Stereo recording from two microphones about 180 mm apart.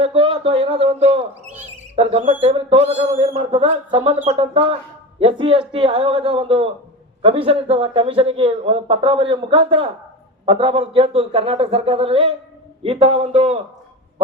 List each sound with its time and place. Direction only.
0.0 s a man's voice: 30° right (ahead or behind)